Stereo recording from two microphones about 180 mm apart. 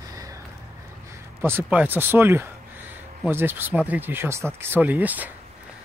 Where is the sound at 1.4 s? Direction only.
10° right (ahead or behind).